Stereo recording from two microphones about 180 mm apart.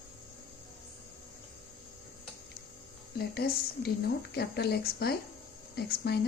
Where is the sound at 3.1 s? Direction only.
60° left (ahead or behind).